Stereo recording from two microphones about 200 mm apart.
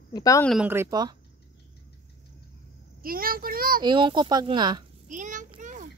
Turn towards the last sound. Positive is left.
turn(degrees=-40)  # may be behind; listen again after turning